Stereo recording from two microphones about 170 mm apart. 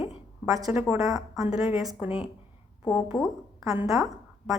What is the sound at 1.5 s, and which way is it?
A woman's voice, 5° right (ahead or behind).